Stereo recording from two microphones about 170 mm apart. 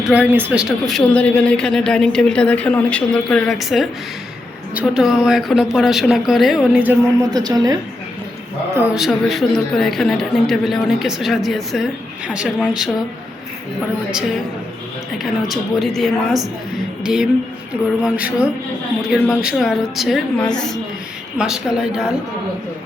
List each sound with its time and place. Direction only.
0.0 s a woman's voice: 5° right (ahead or behind)
7.2 s a woman's voice: 20° right (ahead or behind)
9.0 s a woman's voice: centre (ahead or behind)
15.2 s a woman's voice: centre (ahead or behind)